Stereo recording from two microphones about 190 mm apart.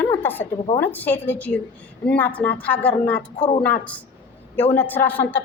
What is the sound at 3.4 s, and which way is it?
Speech, 25° left (ahead or behind).